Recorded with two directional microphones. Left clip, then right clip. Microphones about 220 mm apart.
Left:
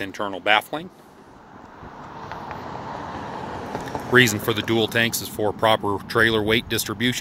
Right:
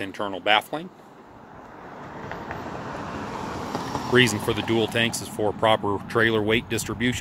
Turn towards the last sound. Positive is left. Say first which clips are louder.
# left 3 dB
turn(degrees=5)  # may be behind; listen again after turning